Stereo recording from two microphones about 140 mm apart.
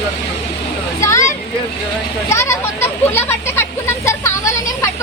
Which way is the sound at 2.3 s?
20° left (ahead or behind).